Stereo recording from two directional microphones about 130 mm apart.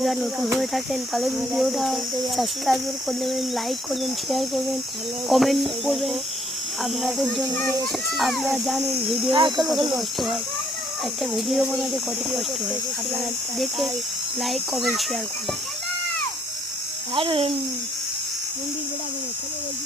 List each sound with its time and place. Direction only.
0.0 s speech: centre (ahead or behind)
7.5 s a child's voice: 15° left (ahead or behind)
8.1 s speech: centre (ahead or behind)
13.6 s speech: centre (ahead or behind)
17.2 s speech: 40° right (ahead or behind)